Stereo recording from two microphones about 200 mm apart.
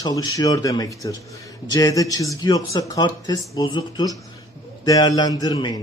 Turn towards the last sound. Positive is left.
turn(degrees=20)  # may be behind; listen again after turning